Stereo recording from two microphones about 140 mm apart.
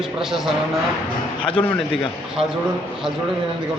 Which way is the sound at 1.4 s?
40° left (ahead or behind).